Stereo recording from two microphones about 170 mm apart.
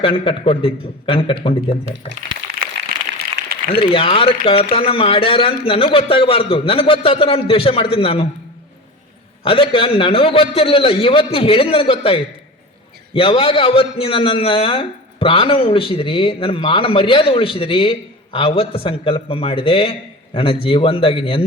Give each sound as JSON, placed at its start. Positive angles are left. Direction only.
{"t": 0.0, "sound": "a man's voice", "side_deg": 30}
{"t": 3.8, "sound": "a man's voice", "side_deg": 30}
{"t": 9.4, "sound": "a man's voice", "side_deg": 30}